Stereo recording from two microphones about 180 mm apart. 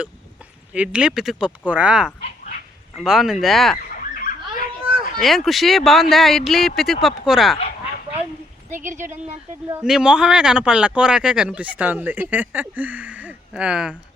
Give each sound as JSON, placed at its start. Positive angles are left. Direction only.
{"t": 0.7, "sound": "speech", "side_deg": -5}
{"t": 3.9, "sound": "a sound", "side_deg": 50}
{"t": 5.2, "sound": "speech", "side_deg": 0}
{"t": 9.8, "sound": "speech", "side_deg": -5}